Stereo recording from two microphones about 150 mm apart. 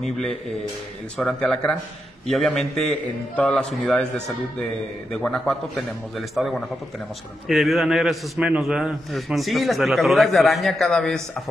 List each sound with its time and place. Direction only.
1.1 s a man's voice: 5° left (ahead or behind)